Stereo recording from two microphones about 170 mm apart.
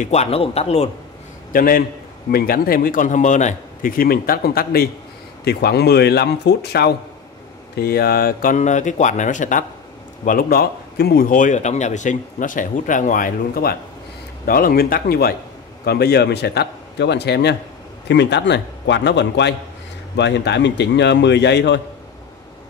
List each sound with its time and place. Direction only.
0.0 s speech: 40° left (ahead or behind)
1.5 s a man's voice: 55° left (ahead or behind); by 17.6 s 80° left
18.0 s a man's voice: 90° left